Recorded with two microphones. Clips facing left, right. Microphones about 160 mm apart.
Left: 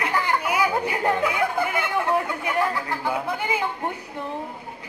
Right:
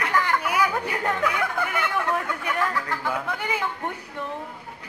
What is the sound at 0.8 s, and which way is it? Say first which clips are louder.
Speech: left 3 dB; 20° left (ahead or behind).